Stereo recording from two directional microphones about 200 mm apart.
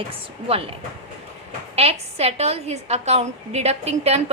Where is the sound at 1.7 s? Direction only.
30° right (ahead or behind).